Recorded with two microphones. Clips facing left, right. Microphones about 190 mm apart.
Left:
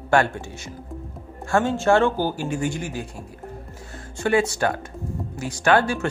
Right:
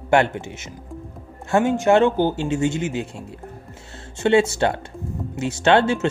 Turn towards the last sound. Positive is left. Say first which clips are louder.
# right 3 dB
turn(degrees=-25)  # may be behind; listen again after turning